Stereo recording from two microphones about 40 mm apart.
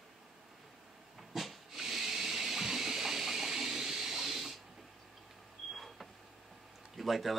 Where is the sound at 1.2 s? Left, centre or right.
Centre.